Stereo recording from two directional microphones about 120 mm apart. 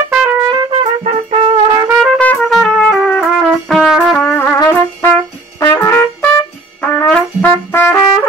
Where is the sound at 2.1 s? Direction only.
5° left (ahead or behind).